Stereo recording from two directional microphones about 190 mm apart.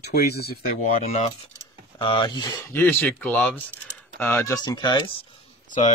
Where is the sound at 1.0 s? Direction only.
35° left (ahead or behind).